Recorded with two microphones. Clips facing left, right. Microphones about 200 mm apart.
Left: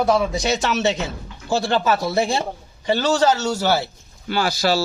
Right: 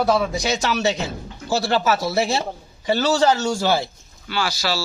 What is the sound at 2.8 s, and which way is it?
Speech, 15° left (ahead or behind).